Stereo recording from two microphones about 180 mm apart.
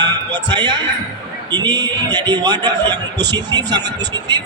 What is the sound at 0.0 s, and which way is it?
A man's voice, 25° right (ahead or behind).